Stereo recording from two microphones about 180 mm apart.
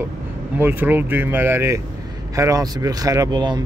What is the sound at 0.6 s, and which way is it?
A man's voice, 10° right (ahead or behind).